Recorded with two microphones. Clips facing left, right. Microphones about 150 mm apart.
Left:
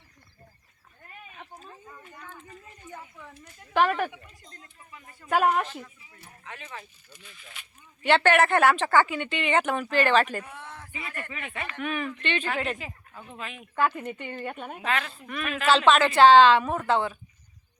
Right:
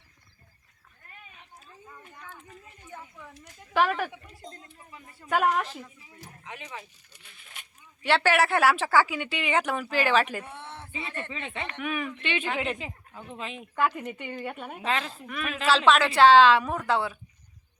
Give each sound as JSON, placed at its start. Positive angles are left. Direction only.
{"t": 1.5, "sound": "a sound", "side_deg": 45}
{"t": 1.9, "sound": "a sound", "side_deg": -5}
{"t": 2.8, "sound": "a sound", "side_deg": 10}
{"t": 3.8, "sound": "speech", "side_deg": 0}
{"t": 4.4, "sound": "speech", "side_deg": -25}
{"t": 5.3, "sound": "speech", "side_deg": 5}
{"t": 6.4, "sound": "speech", "side_deg": -15}
{"t": 7.1, "sound": "speech", "side_deg": -65}
{"t": 8.0, "sound": "a woman's voice", "side_deg": 0}
{"t": 10.4, "sound": "speech", "side_deg": -30}
{"t": 11.8, "sound": "a woman's voice", "side_deg": -5}
{"t": 13.7, "sound": "a woman's voice", "side_deg": -10}